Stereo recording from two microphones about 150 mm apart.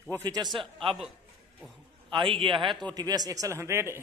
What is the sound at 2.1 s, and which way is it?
A man's voice, 35° right (ahead or behind).